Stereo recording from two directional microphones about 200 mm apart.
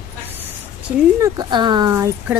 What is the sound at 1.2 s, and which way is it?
Speech, 20° right (ahead or behind).